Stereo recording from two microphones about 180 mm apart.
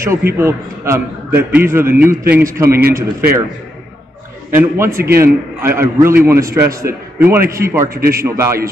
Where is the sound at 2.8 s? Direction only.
55° right (ahead or behind).